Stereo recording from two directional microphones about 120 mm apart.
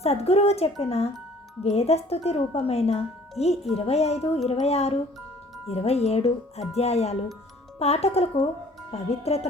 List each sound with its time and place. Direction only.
0.0 s speech: 60° left (ahead or behind)